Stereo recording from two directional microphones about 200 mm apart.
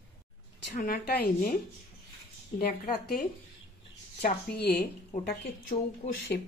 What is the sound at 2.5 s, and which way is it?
Speech, 45° left (ahead or behind).